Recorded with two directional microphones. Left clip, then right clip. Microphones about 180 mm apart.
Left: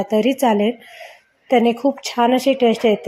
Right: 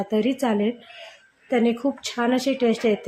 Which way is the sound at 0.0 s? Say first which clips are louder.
Left 7 dB; 10° left (ahead or behind).